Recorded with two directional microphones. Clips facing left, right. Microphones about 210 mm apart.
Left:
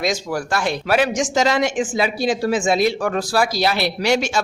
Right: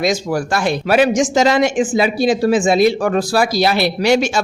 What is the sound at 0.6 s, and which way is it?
Speech, 10° right (ahead or behind).